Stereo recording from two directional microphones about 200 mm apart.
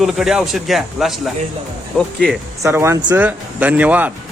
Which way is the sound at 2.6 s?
15° right (ahead or behind).